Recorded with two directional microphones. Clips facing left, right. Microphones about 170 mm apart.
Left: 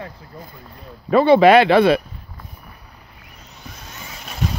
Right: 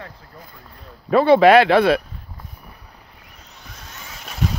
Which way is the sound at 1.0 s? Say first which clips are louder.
Left 1 dB; centre (ahead or behind).